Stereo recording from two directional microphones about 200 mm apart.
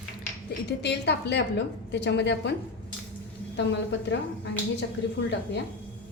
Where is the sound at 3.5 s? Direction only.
65° left (ahead or behind).